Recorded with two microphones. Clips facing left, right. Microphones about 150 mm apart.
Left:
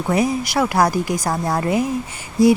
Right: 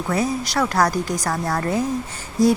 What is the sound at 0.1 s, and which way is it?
Speech, 10° left (ahead or behind).